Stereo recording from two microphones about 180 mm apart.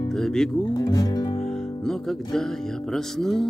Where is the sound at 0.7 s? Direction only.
20° left (ahead or behind).